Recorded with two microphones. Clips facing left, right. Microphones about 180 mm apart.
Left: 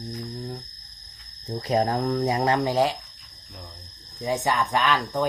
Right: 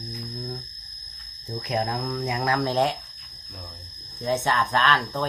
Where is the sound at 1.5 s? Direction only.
30° left (ahead or behind).